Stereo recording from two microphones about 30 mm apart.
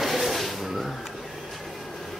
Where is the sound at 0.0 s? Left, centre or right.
Centre.